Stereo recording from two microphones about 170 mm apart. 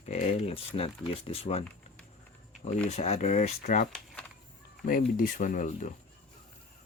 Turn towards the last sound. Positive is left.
turn(degrees=50)  # may be behind; listen again after turning